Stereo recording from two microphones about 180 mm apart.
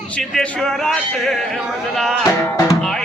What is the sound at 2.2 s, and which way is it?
Music, 15° left (ahead or behind).